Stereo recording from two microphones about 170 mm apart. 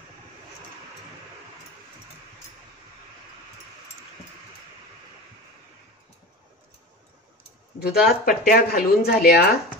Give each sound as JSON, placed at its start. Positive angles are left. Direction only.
{"t": 7.8, "sound": "speech", "side_deg": 60}